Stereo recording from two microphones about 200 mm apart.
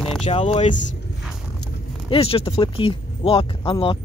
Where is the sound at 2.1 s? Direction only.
30° left (ahead or behind).